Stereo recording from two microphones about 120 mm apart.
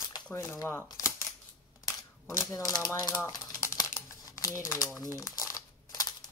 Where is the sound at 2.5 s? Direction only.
30° left (ahead or behind).